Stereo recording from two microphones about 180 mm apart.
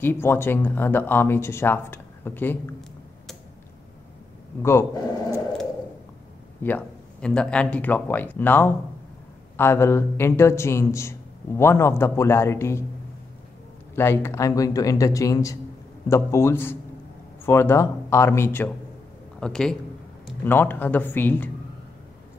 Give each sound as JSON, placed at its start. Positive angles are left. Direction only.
{"t": 0.0, "sound": "a man's voice", "side_deg": 10}
{"t": 4.6, "sound": "a man's voice", "side_deg": 15}
{"t": 6.6, "sound": "a man's voice", "side_deg": 5}
{"t": 13.9, "sound": "a man's voice", "side_deg": 15}